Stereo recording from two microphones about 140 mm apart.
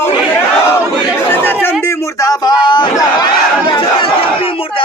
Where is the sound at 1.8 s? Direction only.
20° left (ahead or behind).